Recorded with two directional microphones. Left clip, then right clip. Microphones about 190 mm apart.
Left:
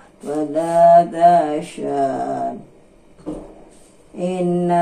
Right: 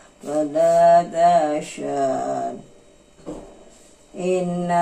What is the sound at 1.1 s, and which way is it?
Mantra, 25° right (ahead or behind).